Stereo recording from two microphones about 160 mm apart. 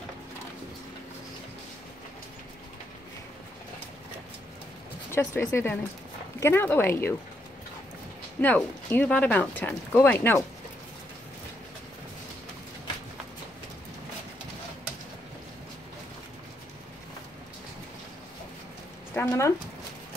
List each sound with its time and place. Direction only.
5.1 s speech: 15° left (ahead or behind)
8.4 s speech: 10° left (ahead or behind)
19.1 s speech: 15° left (ahead or behind)